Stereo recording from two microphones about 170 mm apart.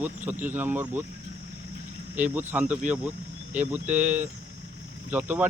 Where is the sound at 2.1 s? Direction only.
10° right (ahead or behind).